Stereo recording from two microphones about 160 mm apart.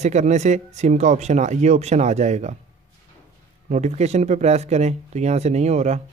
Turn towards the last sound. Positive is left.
turn(degrees=-45)  # may be behind; listen again after turning